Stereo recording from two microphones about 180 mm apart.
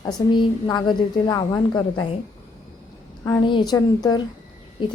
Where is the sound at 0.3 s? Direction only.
25° left (ahead or behind).